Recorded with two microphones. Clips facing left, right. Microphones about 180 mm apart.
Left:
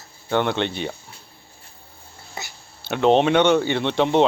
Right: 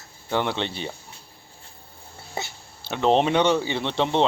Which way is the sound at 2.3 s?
25° right (ahead or behind).